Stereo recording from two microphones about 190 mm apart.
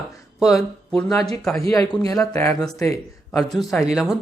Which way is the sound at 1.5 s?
15° left (ahead or behind).